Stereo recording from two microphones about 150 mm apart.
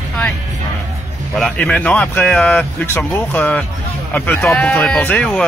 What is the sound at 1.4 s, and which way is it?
Speech, 5° left (ahead or behind).